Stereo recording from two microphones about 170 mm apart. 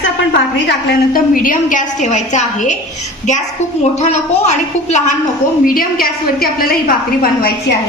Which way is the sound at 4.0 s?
40° left (ahead or behind).